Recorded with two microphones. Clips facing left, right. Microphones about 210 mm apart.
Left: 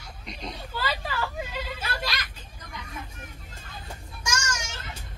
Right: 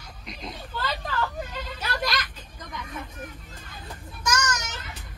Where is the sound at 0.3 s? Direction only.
Centre (ahead or behind).